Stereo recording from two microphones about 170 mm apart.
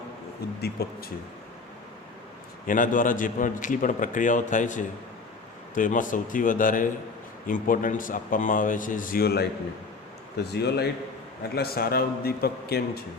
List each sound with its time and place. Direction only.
0.6 s speech: 70° left (ahead or behind)
2.6 s a man's voice: 50° left (ahead or behind); by 13.0 s 65° left (ahead or behind)